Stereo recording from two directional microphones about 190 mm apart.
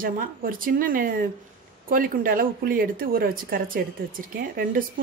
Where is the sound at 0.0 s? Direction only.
50° right (ahead or behind).